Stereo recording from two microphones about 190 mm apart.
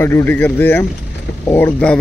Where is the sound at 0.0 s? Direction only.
10° left (ahead or behind).